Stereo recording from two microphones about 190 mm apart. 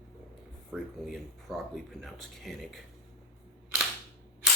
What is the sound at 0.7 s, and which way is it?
Speech, centre (ahead or behind).